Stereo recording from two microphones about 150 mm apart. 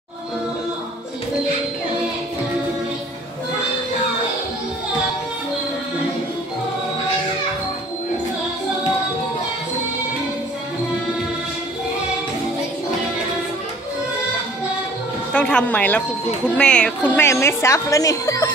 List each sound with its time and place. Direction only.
15.3 s a woman's voice: 5° left (ahead or behind)